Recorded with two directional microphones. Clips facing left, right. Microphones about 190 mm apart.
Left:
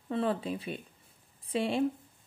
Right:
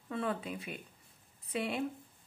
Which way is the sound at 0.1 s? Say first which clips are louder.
Left 5 dB; 30° left (ahead or behind).